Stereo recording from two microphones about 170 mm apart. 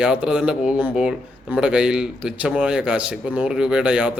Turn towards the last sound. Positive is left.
turn(degrees=-5)  # may be behind; listen again after turning